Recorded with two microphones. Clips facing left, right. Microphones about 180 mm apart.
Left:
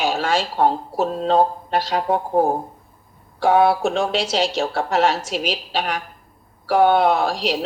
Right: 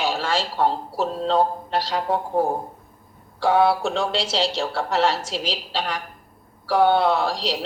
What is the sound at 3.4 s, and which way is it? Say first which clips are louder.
A woman's voice: left 3 dB; 15° left (ahead or behind).